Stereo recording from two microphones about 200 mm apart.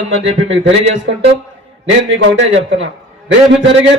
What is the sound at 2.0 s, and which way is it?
A man's voice, 70° right (ahead or behind).